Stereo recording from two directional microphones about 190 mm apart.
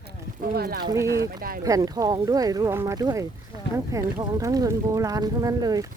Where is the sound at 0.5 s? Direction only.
55° right (ahead or behind).